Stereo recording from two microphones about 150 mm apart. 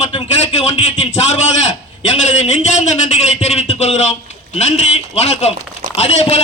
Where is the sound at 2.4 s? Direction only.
50° left (ahead or behind).